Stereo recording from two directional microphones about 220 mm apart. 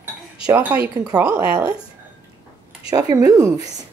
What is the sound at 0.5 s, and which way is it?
Speech, 10° right (ahead or behind).